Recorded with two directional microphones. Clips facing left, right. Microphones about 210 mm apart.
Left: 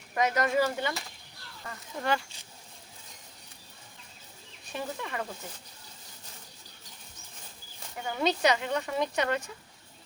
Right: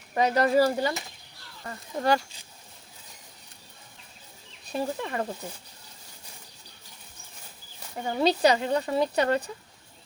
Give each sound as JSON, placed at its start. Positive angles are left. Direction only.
{"t": 0.1, "sound": "speech", "side_deg": -30}
{"t": 4.7, "sound": "speech", "side_deg": -35}
{"t": 7.9, "sound": "speech", "side_deg": -35}